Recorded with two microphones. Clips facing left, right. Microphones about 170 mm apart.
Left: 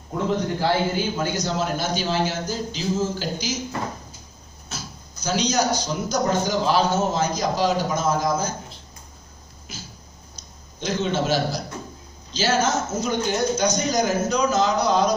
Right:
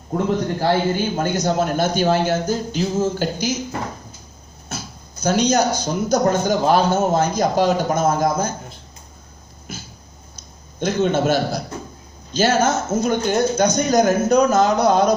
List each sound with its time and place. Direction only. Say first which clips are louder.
0.6 s speech: right 3 dB; 50° right (ahead or behind)
4.6 s speech: right 4 dB; 55° right (ahead or behind)
9.7 s a sound: right 5 dB; 55° right (ahead or behind)
12.3 s speech: right 4 dB; 55° right (ahead or behind)